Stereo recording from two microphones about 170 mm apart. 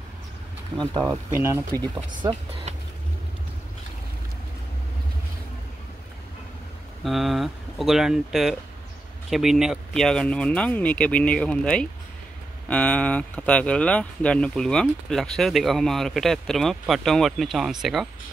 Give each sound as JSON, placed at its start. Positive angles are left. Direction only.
{"t": 0.7, "sound": "speech", "side_deg": 5}
{"t": 1.1, "sound": "speech", "side_deg": -15}
{"t": 7.1, "sound": "speech", "side_deg": 0}